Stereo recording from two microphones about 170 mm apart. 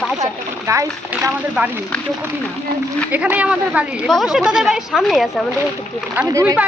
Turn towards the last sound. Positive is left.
turn(degrees=-15)  # may be behind; listen again after turning